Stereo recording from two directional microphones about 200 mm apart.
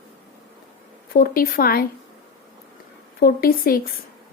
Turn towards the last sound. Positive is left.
turn(degrees=45)  # may be behind; listen again after turning